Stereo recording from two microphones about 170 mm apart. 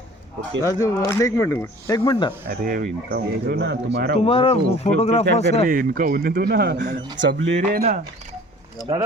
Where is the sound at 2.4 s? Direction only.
60° right (ahead or behind).